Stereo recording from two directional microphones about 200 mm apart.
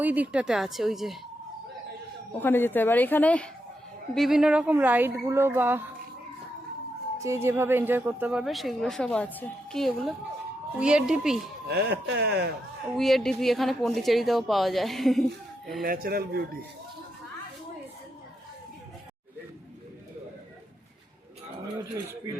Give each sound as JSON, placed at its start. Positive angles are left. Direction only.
{"t": 0.0, "sound": "speech", "side_deg": -10}
{"t": 2.4, "sound": "a woman's voice", "side_deg": 10}
{"t": 7.2, "sound": "speech", "side_deg": -15}
{"t": 11.7, "sound": "speech", "side_deg": -55}
{"t": 13.0, "sound": "speech", "side_deg": 0}
{"t": 15.8, "sound": "speech", "side_deg": -45}